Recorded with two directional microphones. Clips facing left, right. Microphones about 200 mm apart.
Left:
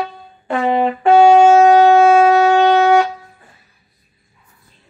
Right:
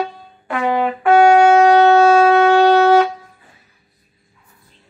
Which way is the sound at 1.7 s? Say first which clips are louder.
Left 1 dB; 15° left (ahead or behind).